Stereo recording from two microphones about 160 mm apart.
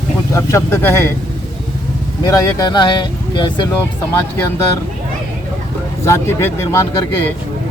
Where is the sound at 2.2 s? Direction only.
25° left (ahead or behind).